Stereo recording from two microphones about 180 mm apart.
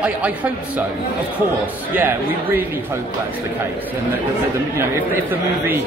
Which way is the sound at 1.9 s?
10° right (ahead or behind).